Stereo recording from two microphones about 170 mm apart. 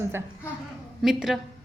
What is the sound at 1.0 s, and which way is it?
Speech, centre (ahead or behind).